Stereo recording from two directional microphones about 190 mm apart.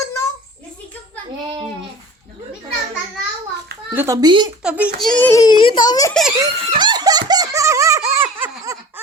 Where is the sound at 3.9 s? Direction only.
15° right (ahead or behind).